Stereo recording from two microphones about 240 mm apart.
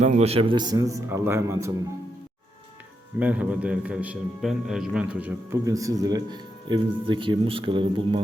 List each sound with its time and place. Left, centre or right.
0.0 s a man's voice: right
3.2 s a man's voice: centre